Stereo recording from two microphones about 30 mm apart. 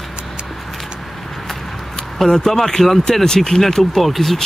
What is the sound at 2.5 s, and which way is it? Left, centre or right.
Speech, centre.